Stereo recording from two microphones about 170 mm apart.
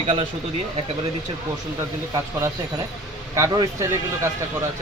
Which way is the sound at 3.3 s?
20° right (ahead or behind).